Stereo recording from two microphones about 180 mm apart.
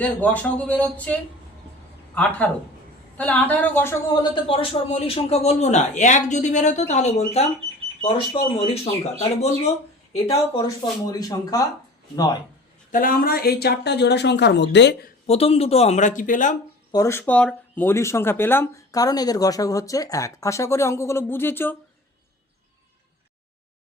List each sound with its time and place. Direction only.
0.0 s speech: 10° left (ahead or behind)
4.1 s a man's voice: 25° left (ahead or behind)
11.0 s speech: 20° left (ahead or behind)
12.9 s speech: 50° left (ahead or behind); by 15.1 s 75° left (ahead or behind)
15.3 s a man's voice: 35° left (ahead or behind)
16.9 s speech: 15° left (ahead or behind)